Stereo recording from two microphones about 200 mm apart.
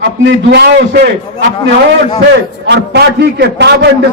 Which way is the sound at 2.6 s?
60° right (ahead or behind).